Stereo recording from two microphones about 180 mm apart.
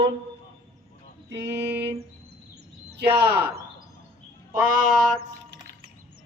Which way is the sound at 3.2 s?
60° right (ahead or behind).